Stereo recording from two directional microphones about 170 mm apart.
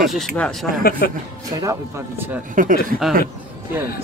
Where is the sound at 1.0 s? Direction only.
60° left (ahead or behind).